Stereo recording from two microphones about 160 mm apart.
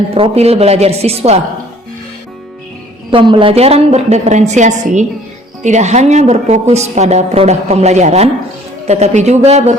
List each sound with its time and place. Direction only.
0.1 s a woman's voice: 40° right (ahead or behind)
3.1 s a woman's voice: 30° right (ahead or behind)